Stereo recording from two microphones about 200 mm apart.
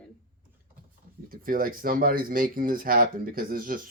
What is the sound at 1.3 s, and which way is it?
Speech, 45° right (ahead or behind).